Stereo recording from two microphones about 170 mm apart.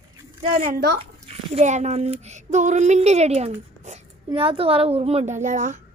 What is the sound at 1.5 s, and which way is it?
A woman's voice, 45° right (ahead or behind).